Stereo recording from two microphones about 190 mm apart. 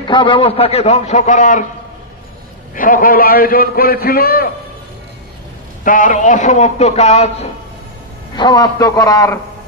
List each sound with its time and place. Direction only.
0.0 s a man's voice: 25° left (ahead or behind); by 1.7 s 40° left (ahead or behind)
2.7 s a man's voice: 45° left (ahead or behind)
5.9 s a man's voice: 45° left (ahead or behind)
8.4 s a man's voice: 20° left (ahead or behind)